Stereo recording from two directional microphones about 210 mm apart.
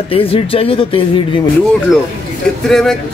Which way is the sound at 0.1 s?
25° left (ahead or behind).